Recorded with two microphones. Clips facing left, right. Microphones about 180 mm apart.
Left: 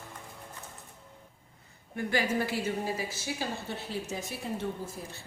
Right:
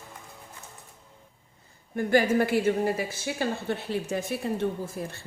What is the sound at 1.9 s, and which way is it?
A woman's voice, 45° right (ahead or behind).